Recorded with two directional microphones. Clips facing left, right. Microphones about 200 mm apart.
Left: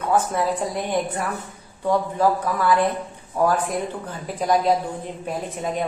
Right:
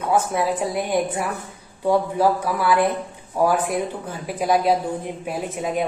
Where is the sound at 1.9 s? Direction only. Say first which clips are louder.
Right 2 dB; 10° right (ahead or behind).